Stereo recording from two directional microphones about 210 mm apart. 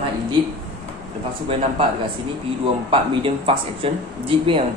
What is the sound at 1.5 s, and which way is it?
Speech, 25° right (ahead or behind).